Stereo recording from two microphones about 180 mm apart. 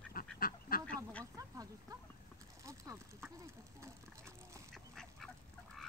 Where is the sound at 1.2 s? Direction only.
20° right (ahead or behind).